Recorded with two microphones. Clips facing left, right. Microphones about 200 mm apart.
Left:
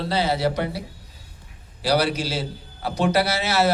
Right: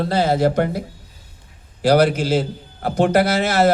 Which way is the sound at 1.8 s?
50° right (ahead or behind).